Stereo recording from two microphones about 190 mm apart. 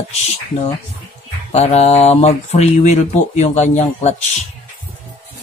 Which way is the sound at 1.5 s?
35° left (ahead or behind).